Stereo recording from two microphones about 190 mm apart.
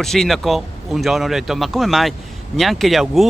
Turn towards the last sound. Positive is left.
turn(degrees=0)  # may be behind; listen again after turning